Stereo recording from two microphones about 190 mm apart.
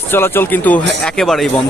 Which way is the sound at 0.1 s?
10° left (ahead or behind).